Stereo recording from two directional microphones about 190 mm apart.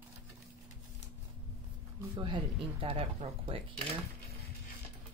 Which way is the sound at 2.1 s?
25° right (ahead or behind).